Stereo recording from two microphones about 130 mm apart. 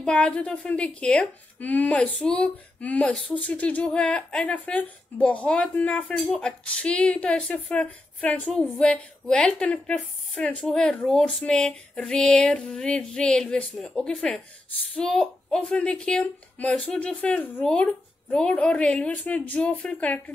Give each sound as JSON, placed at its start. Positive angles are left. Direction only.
{"t": 0.0, "sound": "a woman's voice", "side_deg": 5}